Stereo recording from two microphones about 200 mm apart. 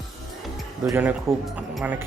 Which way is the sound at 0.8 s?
10° right (ahead or behind).